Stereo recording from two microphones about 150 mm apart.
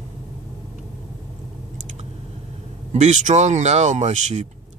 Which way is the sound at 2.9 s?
50° right (ahead or behind).